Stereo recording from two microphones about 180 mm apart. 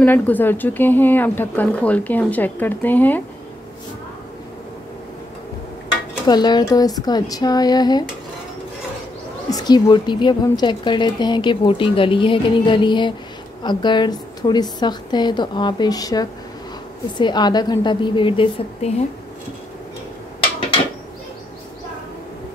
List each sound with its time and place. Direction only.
0.0 s a woman's voice: 10° left (ahead or behind)
6.2 s a woman's voice: 25° left (ahead or behind)
9.5 s a woman's voice: 20° left (ahead or behind)